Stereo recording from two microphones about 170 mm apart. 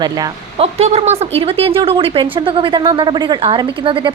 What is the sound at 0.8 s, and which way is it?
A woman's voice, 40° right (ahead or behind).